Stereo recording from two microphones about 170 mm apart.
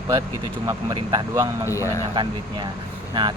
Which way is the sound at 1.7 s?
20° left (ahead or behind).